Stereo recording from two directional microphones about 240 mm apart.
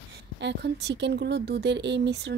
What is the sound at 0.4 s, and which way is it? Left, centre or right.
Speech, right.